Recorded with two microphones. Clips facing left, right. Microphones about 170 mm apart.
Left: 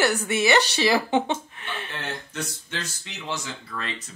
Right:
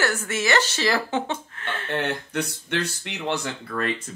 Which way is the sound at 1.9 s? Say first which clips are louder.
Right 8 dB; 60° right (ahead or behind).